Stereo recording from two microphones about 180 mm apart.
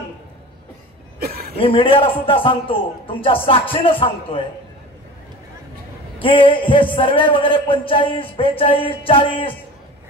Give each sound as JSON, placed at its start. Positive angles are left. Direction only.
{"t": 1.2, "sound": "a sound", "side_deg": -55}
{"t": 1.6, "sound": "a man's voice", "side_deg": 30}
{"t": 3.4, "sound": "music", "side_deg": 30}
{"t": 6.2, "sound": "a man's voice", "side_deg": 30}